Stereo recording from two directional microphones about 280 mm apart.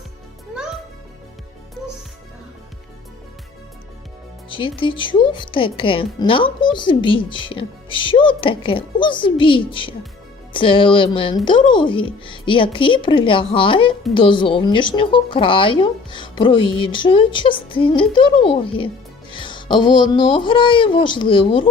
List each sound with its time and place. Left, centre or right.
4.4 s a woman's voice: centre